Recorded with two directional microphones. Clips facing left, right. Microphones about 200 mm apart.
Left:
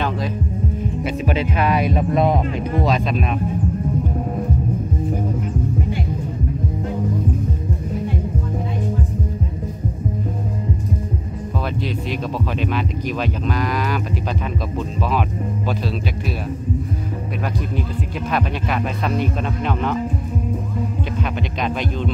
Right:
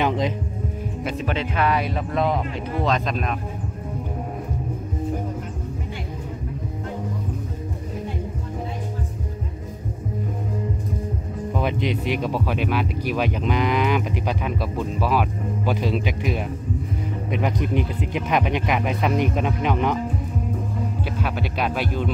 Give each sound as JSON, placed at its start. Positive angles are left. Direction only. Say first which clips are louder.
{"t": 1.0, "sound": "speech", "louder": "left 3 dB", "side_deg": 10}
{"t": 11.6, "sound": "speech", "louder": "right 2 dB", "side_deg": -15}
{"t": 17.4, "sound": "speech", "louder": "right 3 dB", "side_deg": -20}
{"t": 21.2, "sound": "speech", "louder": "even", "side_deg": -5}